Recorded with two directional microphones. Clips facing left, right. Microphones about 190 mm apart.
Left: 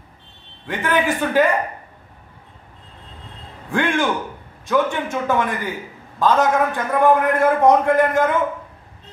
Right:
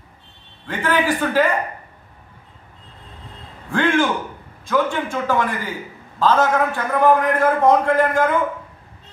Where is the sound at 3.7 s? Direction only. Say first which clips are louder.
Right 2 dB; 15° left (ahead or behind).